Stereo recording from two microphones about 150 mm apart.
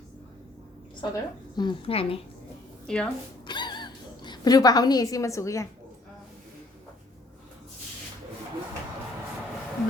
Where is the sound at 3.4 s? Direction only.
30° left (ahead or behind).